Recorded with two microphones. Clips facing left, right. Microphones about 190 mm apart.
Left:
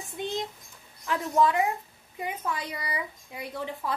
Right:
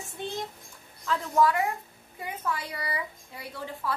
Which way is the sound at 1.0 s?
20° left (ahead or behind).